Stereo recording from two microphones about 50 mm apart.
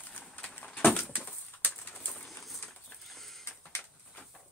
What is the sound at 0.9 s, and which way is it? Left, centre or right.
Bird, left.